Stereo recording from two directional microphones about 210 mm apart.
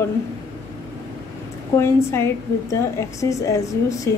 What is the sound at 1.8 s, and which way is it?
A woman's voice, 10° left (ahead or behind).